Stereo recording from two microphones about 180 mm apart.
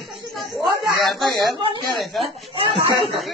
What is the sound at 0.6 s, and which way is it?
Speech, centre (ahead or behind).